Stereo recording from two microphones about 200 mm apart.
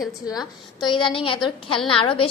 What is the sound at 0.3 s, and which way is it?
A woman's voice, 20° left (ahead or behind).